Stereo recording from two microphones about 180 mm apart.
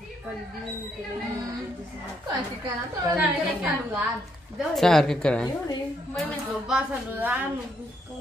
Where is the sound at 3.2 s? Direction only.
5° right (ahead or behind).